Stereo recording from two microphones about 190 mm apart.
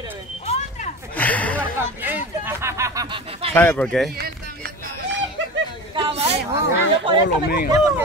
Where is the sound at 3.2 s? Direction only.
30° right (ahead or behind).